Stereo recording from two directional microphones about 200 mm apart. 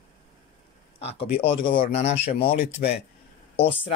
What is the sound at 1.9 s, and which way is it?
Speech, 30° left (ahead or behind).